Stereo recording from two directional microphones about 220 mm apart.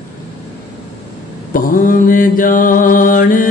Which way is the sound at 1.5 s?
40° left (ahead or behind).